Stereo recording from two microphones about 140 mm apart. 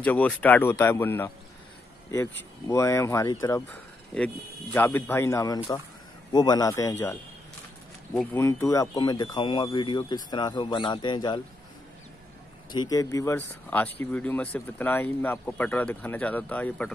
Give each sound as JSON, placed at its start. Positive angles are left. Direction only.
{"t": 0.0, "sound": "speech", "side_deg": 10}
{"t": 8.4, "sound": "speech", "side_deg": 20}
{"t": 12.7, "sound": "speech", "side_deg": 25}